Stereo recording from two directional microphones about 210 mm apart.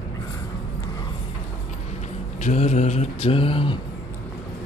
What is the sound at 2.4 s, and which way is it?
Mantra, 35° left (ahead or behind).